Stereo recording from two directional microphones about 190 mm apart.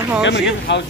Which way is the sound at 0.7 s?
70° left (ahead or behind).